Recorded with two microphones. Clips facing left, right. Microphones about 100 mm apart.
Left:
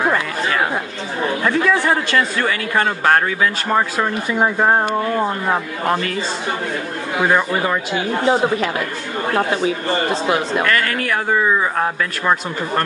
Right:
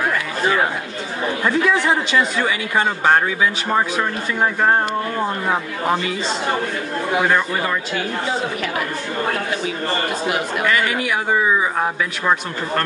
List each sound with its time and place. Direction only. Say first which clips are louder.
2.4 s speech: left 1 dB; 10° right (ahead or behind)
4.0 s speech: left 2 dB; 15° left (ahead or behind)
5.9 s speech: left 1 dB; 10° right (ahead or behind)
7.2 s speech: left 2 dB; 20° left (ahead or behind)
9.7 s speech: left 3 dB; 30° left (ahead or behind)
10.6 s speech: even; 10° right (ahead or behind)